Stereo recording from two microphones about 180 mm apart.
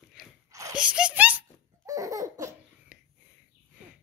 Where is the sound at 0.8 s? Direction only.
5° right (ahead or behind).